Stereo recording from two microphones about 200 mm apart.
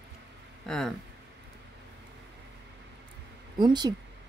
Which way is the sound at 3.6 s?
20° right (ahead or behind).